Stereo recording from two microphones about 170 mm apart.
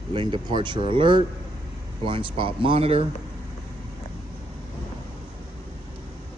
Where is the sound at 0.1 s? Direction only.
30° right (ahead or behind).